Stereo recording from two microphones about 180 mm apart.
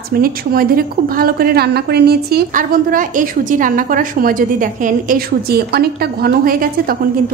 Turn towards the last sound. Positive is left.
turn(degrees=-55)  # may be behind; listen again after turning